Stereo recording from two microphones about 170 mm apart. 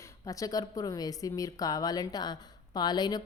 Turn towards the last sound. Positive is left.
turn(degrees=25)  # may be behind; listen again after turning